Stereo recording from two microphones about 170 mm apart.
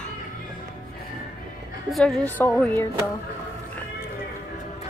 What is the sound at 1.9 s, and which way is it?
Speech, 5° left (ahead or behind).